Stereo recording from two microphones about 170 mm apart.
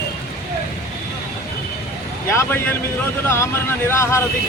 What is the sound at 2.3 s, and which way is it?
Speech, 15° left (ahead or behind).